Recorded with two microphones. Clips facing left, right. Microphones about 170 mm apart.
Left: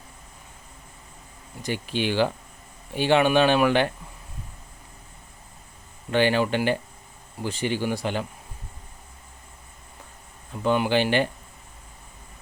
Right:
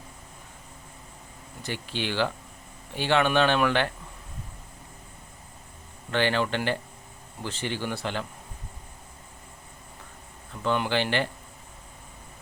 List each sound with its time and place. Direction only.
1.6 s speech: 15° left (ahead or behind)
6.1 s speech: 15° left (ahead or behind)
10.5 s speech: 15° left (ahead or behind)